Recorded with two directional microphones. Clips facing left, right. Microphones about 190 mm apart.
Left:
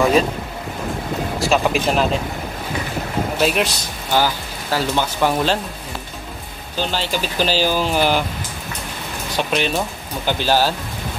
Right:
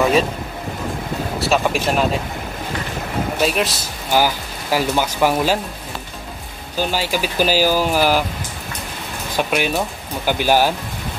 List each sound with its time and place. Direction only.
1.5 s speech: centre (ahead or behind)
3.3 s speech: centre (ahead or behind)
4.1 s speech: 10° right (ahead or behind)
6.8 s speech: 10° right (ahead or behind)
9.4 s speech: 10° right (ahead or behind)